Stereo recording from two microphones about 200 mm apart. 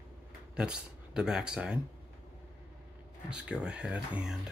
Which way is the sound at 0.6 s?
5° right (ahead or behind).